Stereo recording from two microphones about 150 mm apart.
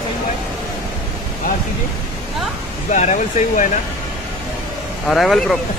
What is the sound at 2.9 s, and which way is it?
Speech, 55° left (ahead or behind).